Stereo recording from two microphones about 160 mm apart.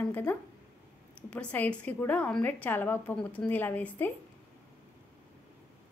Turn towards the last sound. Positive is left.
turn(degrees=10)  # may be behind; listen again after turning